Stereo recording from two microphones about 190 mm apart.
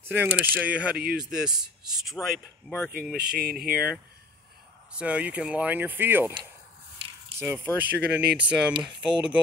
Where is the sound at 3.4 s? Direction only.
55° right (ahead or behind).